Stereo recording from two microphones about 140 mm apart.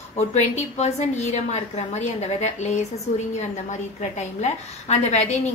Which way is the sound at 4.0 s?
50° left (ahead or behind).